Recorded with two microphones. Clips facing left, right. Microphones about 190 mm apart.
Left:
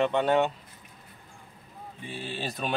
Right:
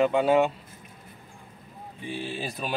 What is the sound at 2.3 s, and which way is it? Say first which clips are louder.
Speech: even; centre (ahead or behind).